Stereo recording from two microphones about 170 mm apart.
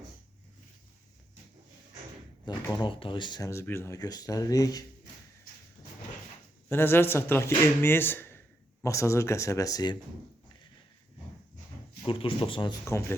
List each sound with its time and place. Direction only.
2.5 s speech: 30° left (ahead or behind)
6.7 s speech: 15° left (ahead or behind)
12.0 s speech: 30° left (ahead or behind)